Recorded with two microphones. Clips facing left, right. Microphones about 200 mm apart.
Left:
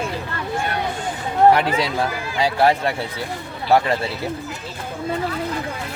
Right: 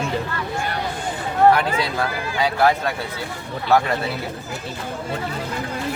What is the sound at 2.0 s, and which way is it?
Speech, 30° left (ahead or behind).